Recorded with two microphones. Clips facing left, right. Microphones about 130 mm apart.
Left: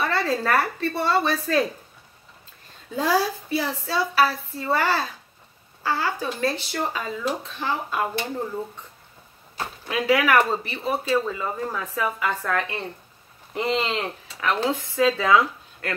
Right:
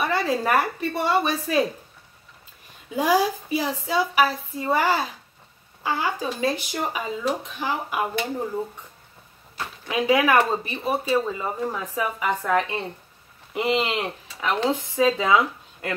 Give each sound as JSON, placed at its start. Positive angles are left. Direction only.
{"t": 0.0, "sound": "a woman's voice", "side_deg": -15}
{"t": 2.9, "sound": "a woman's voice", "side_deg": -15}
{"t": 9.8, "sound": "a woman's voice", "side_deg": -20}